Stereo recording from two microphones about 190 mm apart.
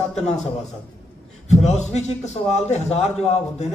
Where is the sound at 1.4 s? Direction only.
35° left (ahead or behind).